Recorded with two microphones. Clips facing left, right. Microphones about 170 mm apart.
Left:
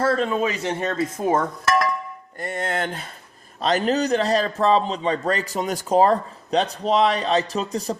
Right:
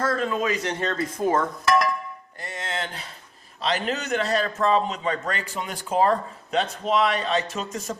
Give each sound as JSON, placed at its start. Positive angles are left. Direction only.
{"t": 0.0, "sound": "speech", "side_deg": 25}
{"t": 2.4, "sound": "a man's voice", "side_deg": 55}